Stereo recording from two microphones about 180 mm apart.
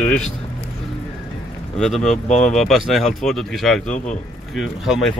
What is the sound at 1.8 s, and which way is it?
Speech, 5° left (ahead or behind).